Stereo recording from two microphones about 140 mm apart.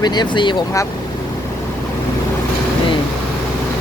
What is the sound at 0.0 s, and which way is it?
Speech, 30° left (ahead or behind).